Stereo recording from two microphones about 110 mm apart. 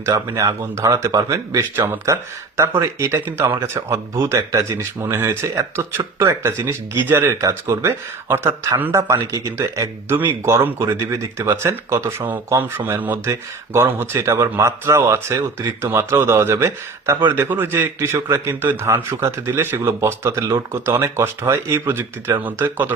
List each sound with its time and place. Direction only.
0.0 s a man's voice: 25° right (ahead or behind)